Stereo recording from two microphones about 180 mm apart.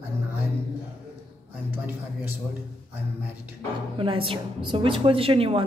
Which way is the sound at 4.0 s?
30° right (ahead or behind).